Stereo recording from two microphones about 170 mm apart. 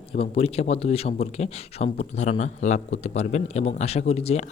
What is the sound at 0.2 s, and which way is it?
Speech, 35° left (ahead or behind).